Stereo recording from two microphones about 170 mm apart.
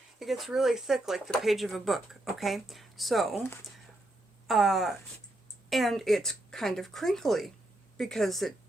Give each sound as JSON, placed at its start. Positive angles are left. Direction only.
{"t": 0.2, "sound": "speech", "side_deg": 0}
{"t": 4.4, "sound": "speech", "side_deg": 0}